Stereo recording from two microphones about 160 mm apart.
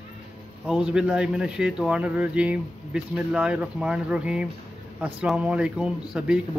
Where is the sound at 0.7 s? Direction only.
5° right (ahead or behind).